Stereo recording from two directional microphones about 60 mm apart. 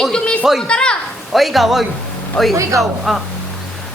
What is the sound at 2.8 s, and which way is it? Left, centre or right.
Speech, centre.